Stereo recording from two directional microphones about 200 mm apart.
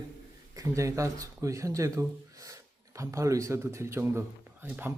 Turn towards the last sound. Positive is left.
turn(degrees=-10)  # may be behind; listen again after turning